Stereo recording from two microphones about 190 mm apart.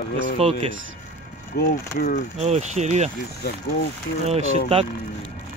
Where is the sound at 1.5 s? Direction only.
60° left (ahead or behind).